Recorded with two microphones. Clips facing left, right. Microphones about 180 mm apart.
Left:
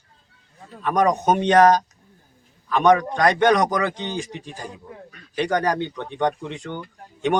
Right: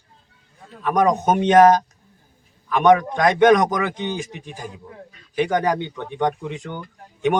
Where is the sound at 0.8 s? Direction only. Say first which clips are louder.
Right 1 dB; 5° right (ahead or behind).